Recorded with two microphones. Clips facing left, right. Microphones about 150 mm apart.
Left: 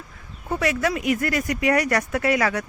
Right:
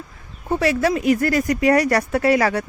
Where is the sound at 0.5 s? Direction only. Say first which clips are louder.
Right 4 dB; 30° right (ahead or behind).